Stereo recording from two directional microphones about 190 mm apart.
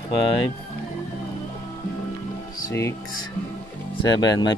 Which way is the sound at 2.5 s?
15° left (ahead or behind).